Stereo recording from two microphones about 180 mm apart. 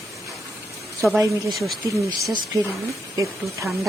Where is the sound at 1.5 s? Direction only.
Centre (ahead or behind).